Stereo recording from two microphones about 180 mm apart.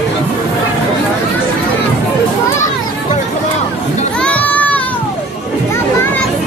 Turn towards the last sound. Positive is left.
turn(degrees=10)  # may be behind; listen again after turning